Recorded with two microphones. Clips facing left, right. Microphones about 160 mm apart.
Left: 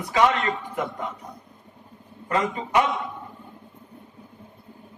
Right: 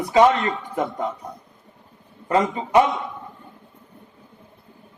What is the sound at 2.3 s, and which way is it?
Speech, 35° right (ahead or behind).